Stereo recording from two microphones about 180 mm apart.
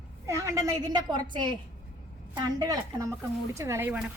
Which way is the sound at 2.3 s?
20° right (ahead or behind).